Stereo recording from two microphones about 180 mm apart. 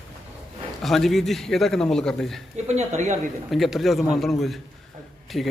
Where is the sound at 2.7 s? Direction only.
40° right (ahead or behind).